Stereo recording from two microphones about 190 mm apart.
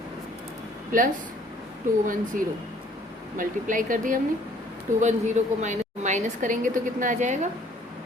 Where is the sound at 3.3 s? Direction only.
45° right (ahead or behind).